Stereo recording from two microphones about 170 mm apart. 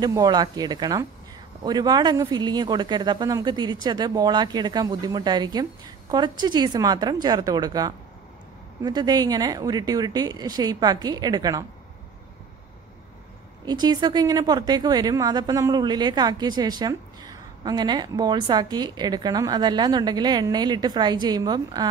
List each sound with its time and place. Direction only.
0.0 s speech: 25° right (ahead or behind)
13.7 s speech: 25° right (ahead or behind)